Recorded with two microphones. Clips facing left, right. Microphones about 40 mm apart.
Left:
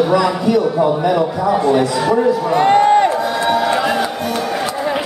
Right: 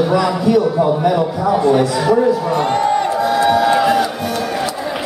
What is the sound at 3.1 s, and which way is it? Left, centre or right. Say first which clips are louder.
Music: right 2 dB; centre.